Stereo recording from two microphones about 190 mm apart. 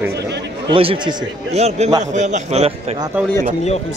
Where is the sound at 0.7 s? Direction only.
25° right (ahead or behind).